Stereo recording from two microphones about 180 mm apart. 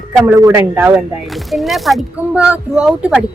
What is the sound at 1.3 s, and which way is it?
A woman's voice, centre (ahead or behind).